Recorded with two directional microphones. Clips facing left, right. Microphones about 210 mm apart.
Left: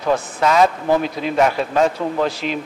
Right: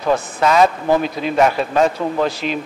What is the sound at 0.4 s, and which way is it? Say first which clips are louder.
Speech: right 1 dB; 15° right (ahead or behind).